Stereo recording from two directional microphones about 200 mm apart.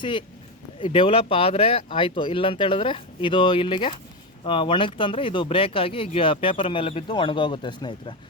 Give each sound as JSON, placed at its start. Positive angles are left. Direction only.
{"t": 0.0, "sound": "speech", "side_deg": 25}